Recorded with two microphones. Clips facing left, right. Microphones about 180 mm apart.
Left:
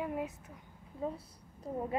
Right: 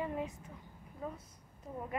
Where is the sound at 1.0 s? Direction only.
30° left (ahead or behind).